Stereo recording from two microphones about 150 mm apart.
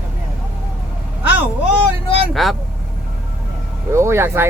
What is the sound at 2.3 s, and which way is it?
Speech, centre (ahead or behind).